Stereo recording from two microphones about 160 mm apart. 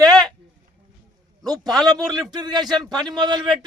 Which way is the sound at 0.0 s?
25° right (ahead or behind).